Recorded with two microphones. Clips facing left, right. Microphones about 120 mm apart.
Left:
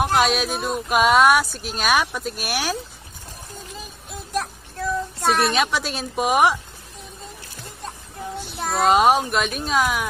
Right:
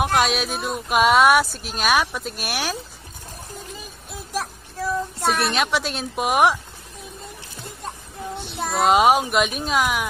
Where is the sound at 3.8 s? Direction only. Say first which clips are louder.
Left 1 dB; centre (ahead or behind).